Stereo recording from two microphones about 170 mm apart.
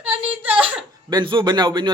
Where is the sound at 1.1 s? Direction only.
25° right (ahead or behind).